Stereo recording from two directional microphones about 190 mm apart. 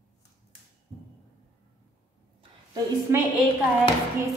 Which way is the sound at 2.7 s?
15° right (ahead or behind).